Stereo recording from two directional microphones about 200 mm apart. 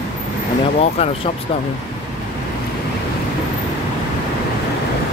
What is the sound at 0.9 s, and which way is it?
Speech, 30° left (ahead or behind).